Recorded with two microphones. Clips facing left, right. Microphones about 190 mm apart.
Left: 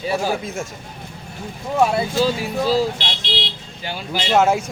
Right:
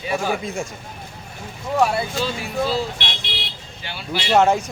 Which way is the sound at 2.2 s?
40° left (ahead or behind).